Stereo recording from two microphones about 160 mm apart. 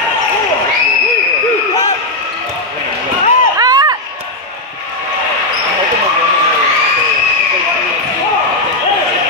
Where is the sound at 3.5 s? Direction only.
25° right (ahead or behind).